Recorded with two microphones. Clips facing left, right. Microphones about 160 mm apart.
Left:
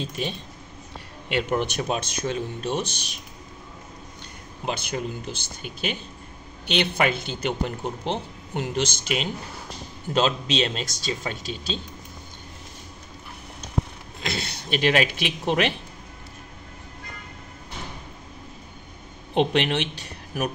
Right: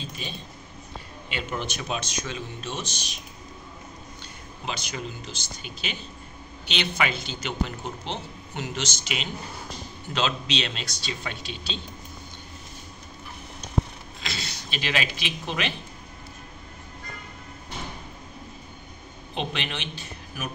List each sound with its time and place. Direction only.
0.0 s speech: 65° left (ahead or behind)
1.5 s speech: 50° left (ahead or behind)
4.6 s speech: 50° left (ahead or behind)
14.2 s speech: 55° left (ahead or behind)
19.3 s a man's voice: 65° left (ahead or behind)